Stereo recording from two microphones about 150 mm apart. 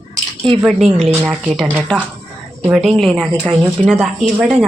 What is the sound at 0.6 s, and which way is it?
Speech, centre (ahead or behind).